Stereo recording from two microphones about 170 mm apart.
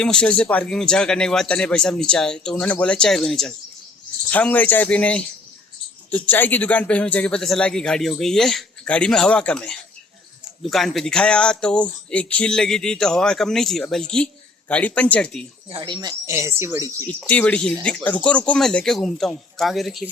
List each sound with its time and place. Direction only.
0.0 s speech: 5° left (ahead or behind)
15.7 s speech: 30° right (ahead or behind)
17.2 s speech: 10° left (ahead or behind)